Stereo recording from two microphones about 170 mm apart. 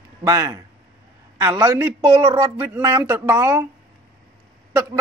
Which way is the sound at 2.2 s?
25° right (ahead or behind).